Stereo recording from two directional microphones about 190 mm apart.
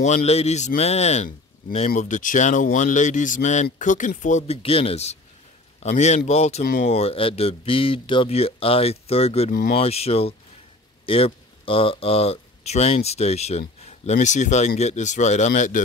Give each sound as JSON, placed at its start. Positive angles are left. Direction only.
{"t": 0.0, "sound": "speech", "side_deg": 35}
{"t": 9.5, "sound": "speech", "side_deg": 45}
{"t": 9.8, "sound": "speech", "side_deg": 30}